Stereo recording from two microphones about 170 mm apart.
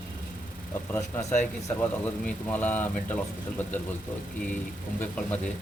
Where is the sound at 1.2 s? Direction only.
40° left (ahead or behind).